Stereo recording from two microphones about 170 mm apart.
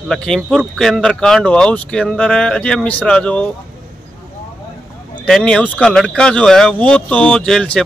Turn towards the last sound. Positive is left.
turn(degrees=5)  # may be behind; listen again after turning